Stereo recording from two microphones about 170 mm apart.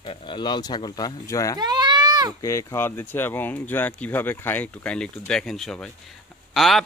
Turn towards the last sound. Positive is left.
turn(degrees=0)  # may be behind; listen again after turning